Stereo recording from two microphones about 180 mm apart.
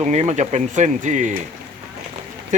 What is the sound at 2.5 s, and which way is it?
Speech, 45° right (ahead or behind).